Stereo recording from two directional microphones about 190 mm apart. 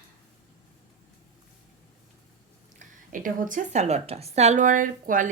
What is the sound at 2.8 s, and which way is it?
A woman's voice, 45° right (ahead or behind).